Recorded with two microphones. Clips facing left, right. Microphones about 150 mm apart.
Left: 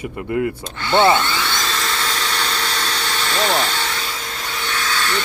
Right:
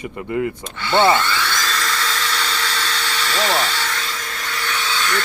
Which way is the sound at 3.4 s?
Centre (ahead or behind).